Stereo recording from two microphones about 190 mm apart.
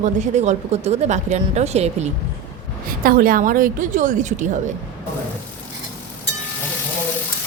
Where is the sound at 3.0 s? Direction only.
50° right (ahead or behind).